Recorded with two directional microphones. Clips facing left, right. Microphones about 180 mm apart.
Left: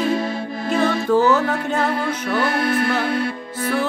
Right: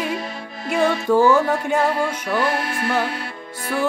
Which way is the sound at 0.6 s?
10° right (ahead or behind).